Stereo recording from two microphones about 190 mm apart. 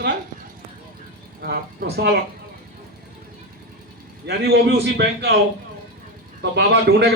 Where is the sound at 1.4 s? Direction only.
55° right (ahead or behind).